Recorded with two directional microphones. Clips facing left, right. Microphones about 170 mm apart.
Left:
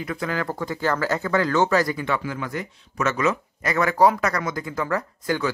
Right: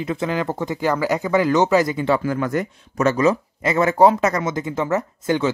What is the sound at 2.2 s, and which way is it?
Speech, 45° right (ahead or behind).